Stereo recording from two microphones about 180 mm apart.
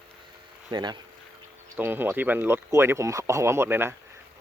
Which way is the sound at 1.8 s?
10° right (ahead or behind).